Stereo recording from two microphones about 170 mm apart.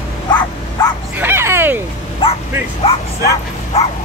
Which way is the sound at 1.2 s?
15° right (ahead or behind).